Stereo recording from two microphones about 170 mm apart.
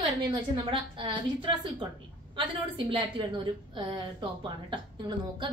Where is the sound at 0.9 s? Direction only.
30° right (ahead or behind).